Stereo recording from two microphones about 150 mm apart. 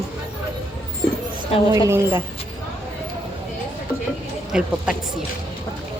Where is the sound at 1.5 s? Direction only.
40° left (ahead or behind).